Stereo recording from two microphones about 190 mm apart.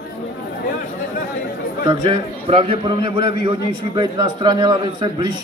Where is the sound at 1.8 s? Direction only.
25° right (ahead or behind).